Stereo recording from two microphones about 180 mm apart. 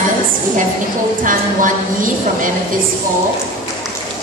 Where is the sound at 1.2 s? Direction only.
45° right (ahead or behind).